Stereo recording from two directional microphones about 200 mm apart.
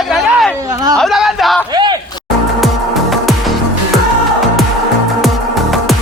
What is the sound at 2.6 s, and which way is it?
Music, centre (ahead or behind).